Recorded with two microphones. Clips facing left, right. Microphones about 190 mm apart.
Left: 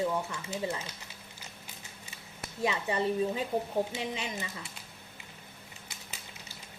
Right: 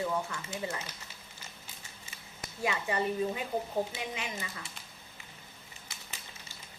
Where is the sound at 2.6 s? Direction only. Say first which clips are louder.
Left 2 dB; 25° left (ahead or behind).